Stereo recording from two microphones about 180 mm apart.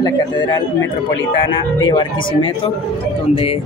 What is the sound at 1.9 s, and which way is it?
Speech, 25° left (ahead or behind).